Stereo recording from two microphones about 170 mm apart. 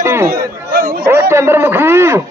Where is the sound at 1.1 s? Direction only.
15° right (ahead or behind).